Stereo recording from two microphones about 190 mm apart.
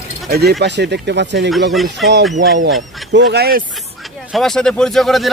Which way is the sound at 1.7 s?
Centre (ahead or behind).